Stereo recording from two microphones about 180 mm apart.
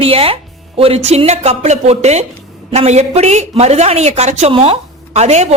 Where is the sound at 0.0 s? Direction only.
30° right (ahead or behind).